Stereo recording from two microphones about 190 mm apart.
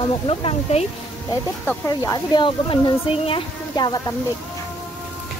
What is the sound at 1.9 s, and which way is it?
Speech, 20° left (ahead or behind).